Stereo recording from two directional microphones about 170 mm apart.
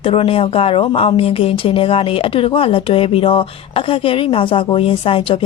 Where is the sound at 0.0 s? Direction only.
35° left (ahead or behind).